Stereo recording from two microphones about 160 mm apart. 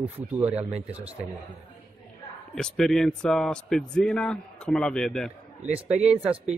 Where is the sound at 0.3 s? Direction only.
10° right (ahead or behind).